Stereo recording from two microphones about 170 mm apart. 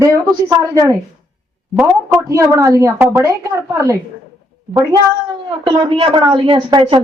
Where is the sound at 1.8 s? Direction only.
15° right (ahead or behind).